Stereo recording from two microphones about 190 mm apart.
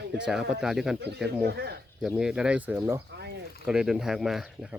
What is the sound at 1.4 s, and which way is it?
Speech, 55° right (ahead or behind).